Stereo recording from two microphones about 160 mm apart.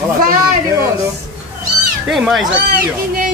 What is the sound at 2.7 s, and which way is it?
Speech, 60° right (ahead or behind).